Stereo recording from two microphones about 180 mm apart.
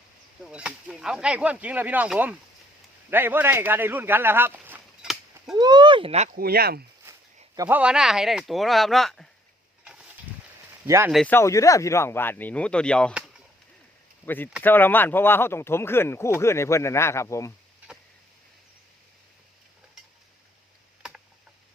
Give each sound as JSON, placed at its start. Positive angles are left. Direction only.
{"t": 0.4, "sound": "speech", "side_deg": -5}
{"t": 5.5, "sound": "speech", "side_deg": -25}
{"t": 6.3, "sound": "speech", "side_deg": -60}
{"t": 7.1, "sound": "a sound", "side_deg": -15}
{"t": 7.7, "sound": "speech", "side_deg": -5}
{"t": 9.8, "sound": "a sound", "side_deg": -5}
{"t": 10.8, "sound": "speech", "side_deg": -15}
{"t": 11.1, "sound": "speech", "side_deg": 0}
{"t": 11.3, "sound": "speech", "side_deg": 15}
{"t": 13.1, "sound": "chop", "side_deg": -5}
{"t": 14.3, "sound": "speech", "side_deg": 10}